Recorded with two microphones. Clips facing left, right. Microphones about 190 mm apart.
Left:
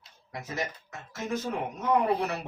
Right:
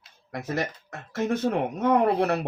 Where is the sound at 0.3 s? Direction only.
60° right (ahead or behind).